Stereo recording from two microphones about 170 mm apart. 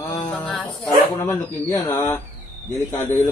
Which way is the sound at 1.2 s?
15° left (ahead or behind).